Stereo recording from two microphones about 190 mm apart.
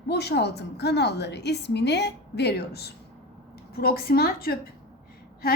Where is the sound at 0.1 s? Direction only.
60° left (ahead or behind).